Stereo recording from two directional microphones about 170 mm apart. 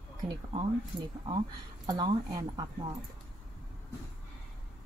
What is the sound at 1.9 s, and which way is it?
Speech, 20° right (ahead or behind).